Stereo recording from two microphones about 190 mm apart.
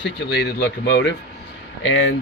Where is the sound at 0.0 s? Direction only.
65° left (ahead or behind).